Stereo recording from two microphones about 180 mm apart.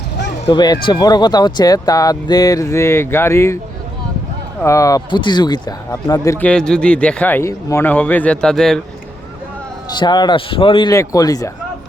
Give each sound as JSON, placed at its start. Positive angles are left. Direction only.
{"t": 0.4, "sound": "speech", "side_deg": 25}
{"t": 4.6, "sound": "speech", "side_deg": 15}
{"t": 10.0, "sound": "speech", "side_deg": 25}